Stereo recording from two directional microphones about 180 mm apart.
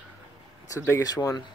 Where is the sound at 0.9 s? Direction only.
20° left (ahead or behind).